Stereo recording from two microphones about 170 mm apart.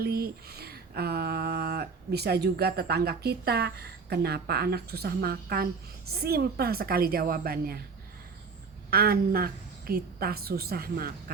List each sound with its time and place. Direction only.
0.0 s a woman's voice: 65° right (ahead or behind)
8.9 s a woman's voice: 60° right (ahead or behind)